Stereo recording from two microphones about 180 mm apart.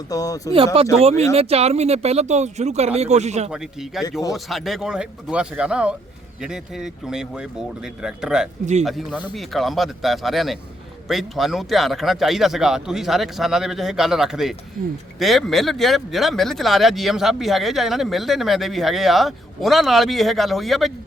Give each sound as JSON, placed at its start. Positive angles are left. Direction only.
{"t": 0.1, "sound": "speech", "side_deg": 20}
{"t": 0.5, "sound": "speech", "side_deg": -30}
{"t": 3.5, "sound": "speech", "side_deg": 0}